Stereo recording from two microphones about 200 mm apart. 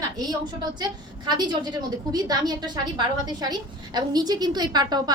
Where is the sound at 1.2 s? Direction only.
20° right (ahead or behind).